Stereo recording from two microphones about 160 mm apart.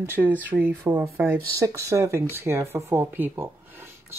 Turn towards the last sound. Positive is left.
turn(degrees=-15)  # may be behind; listen again after turning